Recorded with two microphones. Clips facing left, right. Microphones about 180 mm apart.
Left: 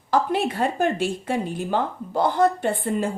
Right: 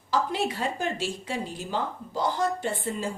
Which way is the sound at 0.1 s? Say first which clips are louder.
Left 5 dB; 55° left (ahead or behind).